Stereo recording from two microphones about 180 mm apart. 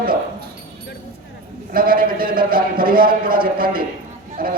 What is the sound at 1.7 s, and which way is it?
A man's voice, 55° right (ahead or behind).